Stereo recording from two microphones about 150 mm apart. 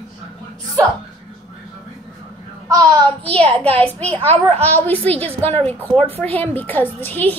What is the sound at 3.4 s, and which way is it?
A woman's voice, 10° left (ahead or behind).